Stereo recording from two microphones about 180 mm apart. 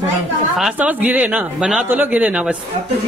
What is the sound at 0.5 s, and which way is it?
Speech, 5° right (ahead or behind).